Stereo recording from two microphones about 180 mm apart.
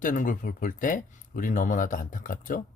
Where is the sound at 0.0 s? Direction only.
50° left (ahead or behind).